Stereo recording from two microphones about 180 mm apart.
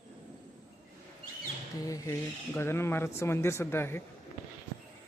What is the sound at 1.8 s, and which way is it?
Speech, 20° left (ahead or behind).